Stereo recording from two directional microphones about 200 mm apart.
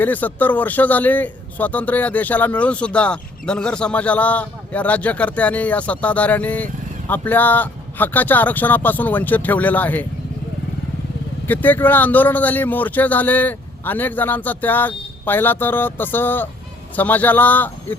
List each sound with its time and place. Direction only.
0.0 s a man's voice: 10° left (ahead or behind)
11.4 s a man's voice: 10° left (ahead or behind)